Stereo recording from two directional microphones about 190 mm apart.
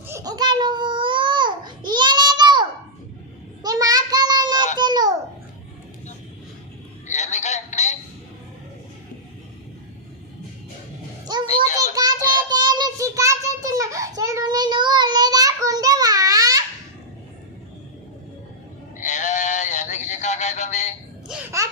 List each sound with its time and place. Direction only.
0.1 s babbling: 20° right (ahead or behind)
3.6 s child singing: 20° right (ahead or behind)
4.8 s babbling: 20° right (ahead or behind)
7.1 s a sound: 35° left (ahead or behind)
11.4 s a sound: 35° left (ahead or behind)
11.8 s child singing: 20° right (ahead or behind)
18.9 s synthetic singing: 40° left (ahead or behind)